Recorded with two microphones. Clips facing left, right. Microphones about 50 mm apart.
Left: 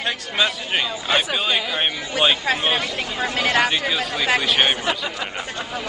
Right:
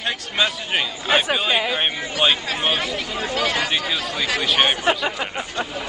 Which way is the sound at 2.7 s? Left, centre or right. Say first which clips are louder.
Even; left.